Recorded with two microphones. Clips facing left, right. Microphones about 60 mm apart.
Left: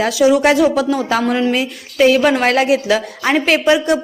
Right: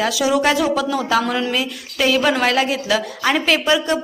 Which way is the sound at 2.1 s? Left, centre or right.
Centre.